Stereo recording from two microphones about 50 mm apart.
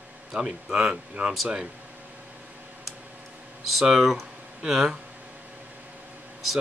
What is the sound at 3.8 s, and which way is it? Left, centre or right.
Speech, centre.